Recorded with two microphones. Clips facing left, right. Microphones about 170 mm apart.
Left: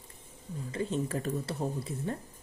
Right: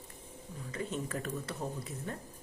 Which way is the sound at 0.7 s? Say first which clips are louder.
Left 5 dB; 30° left (ahead or behind).